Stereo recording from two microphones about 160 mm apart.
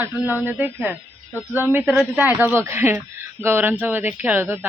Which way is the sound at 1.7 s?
10° right (ahead or behind).